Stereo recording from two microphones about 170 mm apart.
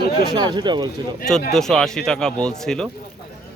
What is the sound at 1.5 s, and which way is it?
A man's voice, centre (ahead or behind).